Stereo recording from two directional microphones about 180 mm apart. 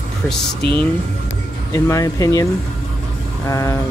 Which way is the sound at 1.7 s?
20° left (ahead or behind).